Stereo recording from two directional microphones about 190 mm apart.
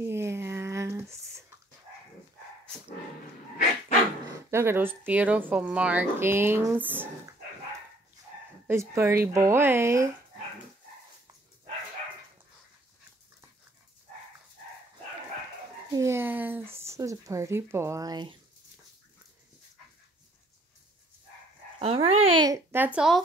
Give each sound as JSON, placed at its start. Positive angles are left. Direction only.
{"t": 0.0, "sound": "a sound", "side_deg": -15}
{"t": 4.5, "sound": "speech", "side_deg": -10}
{"t": 8.6, "sound": "speech", "side_deg": -15}
{"t": 15.9, "sound": "speech", "side_deg": -15}
{"t": 21.7, "sound": "speech", "side_deg": -30}